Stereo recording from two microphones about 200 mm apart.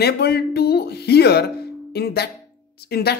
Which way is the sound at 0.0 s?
55° left (ahead or behind).